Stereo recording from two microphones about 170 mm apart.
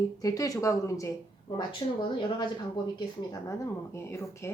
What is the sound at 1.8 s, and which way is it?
Speech, 30° left (ahead or behind).